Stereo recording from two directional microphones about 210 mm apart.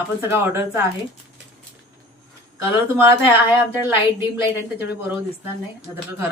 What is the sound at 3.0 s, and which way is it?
Speech, 10° right (ahead or behind).